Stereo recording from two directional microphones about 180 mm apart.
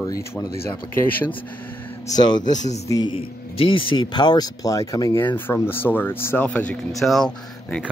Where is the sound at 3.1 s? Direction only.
30° left (ahead or behind); by 7.8 s 5° left (ahead or behind).